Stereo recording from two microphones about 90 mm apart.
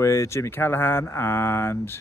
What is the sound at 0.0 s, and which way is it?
Speech, 35° left (ahead or behind).